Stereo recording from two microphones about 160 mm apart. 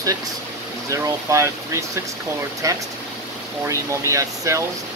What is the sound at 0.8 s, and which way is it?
Speech, 20° right (ahead or behind).